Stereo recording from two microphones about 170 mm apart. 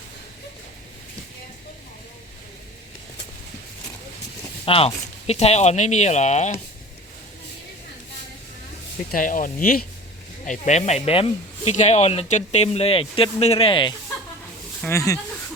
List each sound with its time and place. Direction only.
4.6 s speech: 35° left (ahead or behind)
9.1 s speech: 50° left (ahead or behind)
10.4 s speech: 45° left (ahead or behind); by 13.9 s 30° left (ahead or behind)
14.8 s speech: 15° left (ahead or behind)